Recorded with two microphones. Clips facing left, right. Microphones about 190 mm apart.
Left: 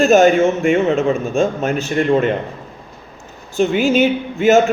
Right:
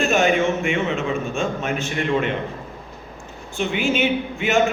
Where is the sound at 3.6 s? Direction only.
40° left (ahead or behind).